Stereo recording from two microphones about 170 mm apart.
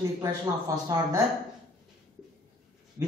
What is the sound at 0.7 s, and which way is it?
Speech, 20° right (ahead or behind).